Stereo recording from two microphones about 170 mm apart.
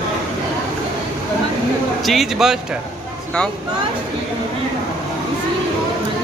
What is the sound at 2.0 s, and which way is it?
Speech, centre (ahead or behind).